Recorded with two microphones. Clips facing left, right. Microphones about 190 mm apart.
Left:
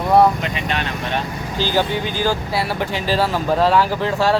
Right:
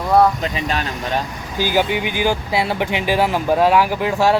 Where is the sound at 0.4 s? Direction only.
35° right (ahead or behind).